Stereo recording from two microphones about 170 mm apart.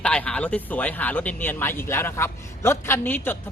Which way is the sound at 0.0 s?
5° left (ahead or behind).